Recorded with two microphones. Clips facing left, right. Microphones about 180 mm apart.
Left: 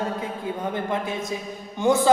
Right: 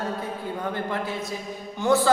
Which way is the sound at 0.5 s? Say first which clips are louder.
Left 2 dB; 20° left (ahead or behind).